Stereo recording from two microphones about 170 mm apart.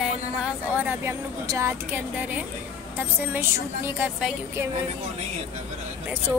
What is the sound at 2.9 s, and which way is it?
Speech, 15° right (ahead or behind).